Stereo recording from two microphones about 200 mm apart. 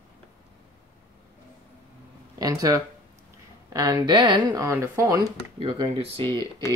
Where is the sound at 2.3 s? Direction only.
15° right (ahead or behind).